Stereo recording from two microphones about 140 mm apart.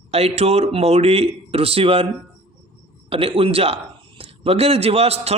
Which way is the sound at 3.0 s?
40° right (ahead or behind).